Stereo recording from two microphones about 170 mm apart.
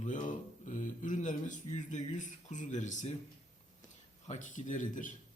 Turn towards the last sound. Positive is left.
turn(degrees=50)  # may be behind; listen again after turning